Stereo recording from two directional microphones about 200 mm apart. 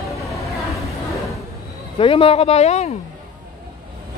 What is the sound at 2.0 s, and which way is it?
Speech, 25° left (ahead or behind).